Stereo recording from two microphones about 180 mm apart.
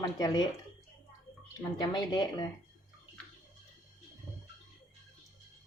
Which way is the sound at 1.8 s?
20° left (ahead or behind).